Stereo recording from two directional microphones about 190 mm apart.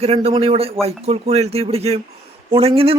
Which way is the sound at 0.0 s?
35° right (ahead or behind).